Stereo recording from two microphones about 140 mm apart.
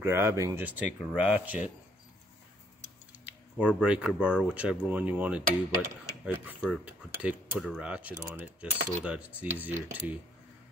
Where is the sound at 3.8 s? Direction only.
5° right (ahead or behind).